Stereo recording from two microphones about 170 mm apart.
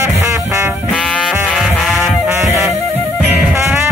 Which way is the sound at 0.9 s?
5° left (ahead or behind).